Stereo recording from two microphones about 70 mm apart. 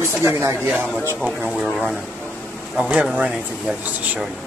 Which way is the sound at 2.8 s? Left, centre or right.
Centre.